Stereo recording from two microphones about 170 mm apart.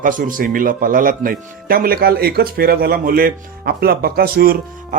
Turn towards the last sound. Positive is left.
turn(degrees=-60)  # may be behind; listen again after turning